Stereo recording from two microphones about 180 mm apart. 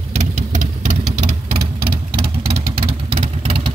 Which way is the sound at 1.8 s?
30° right (ahead or behind).